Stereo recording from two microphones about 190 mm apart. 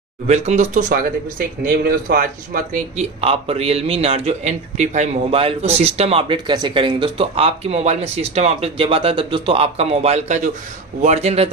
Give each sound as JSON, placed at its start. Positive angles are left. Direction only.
{"t": 0.3, "sound": "a man's voice", "side_deg": -40}